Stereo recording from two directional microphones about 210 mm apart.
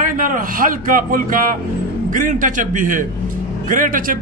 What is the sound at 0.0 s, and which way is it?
A man's voice, 40° right (ahead or behind).